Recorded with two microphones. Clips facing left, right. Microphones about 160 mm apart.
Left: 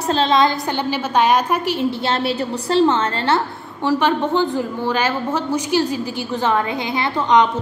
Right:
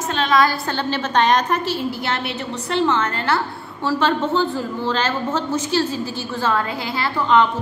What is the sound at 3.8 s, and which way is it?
A woman's voice, 15° left (ahead or behind).